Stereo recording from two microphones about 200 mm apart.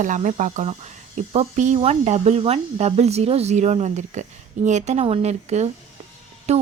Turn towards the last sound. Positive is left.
turn(degrees=-35)  # may be behind; listen again after turning